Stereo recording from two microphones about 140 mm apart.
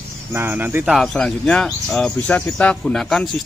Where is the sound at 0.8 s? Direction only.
Centre (ahead or behind).